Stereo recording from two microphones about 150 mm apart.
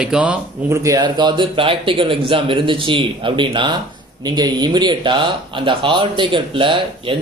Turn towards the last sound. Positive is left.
turn(degrees=-35)  # may be behind; listen again after turning